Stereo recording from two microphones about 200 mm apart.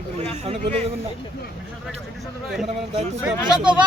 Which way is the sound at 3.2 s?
5° right (ahead or behind).